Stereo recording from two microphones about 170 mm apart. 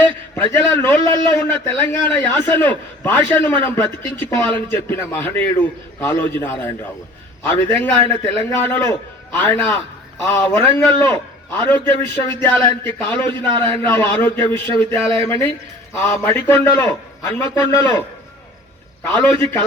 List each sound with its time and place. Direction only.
0.3 s a man's voice: 15° left (ahead or behind)
19.0 s a man's voice: 15° left (ahead or behind)